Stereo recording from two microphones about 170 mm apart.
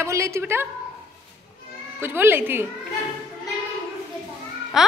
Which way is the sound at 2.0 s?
10° right (ahead or behind).